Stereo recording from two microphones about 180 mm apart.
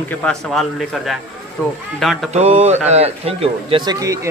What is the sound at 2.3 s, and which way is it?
Speech, 35° right (ahead or behind).